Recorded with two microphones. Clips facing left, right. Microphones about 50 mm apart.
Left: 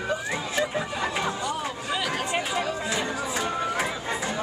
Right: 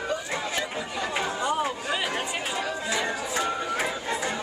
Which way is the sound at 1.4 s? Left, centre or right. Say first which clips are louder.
Right 3 dB; right.